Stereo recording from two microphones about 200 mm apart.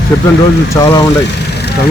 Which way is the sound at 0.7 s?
15° left (ahead or behind).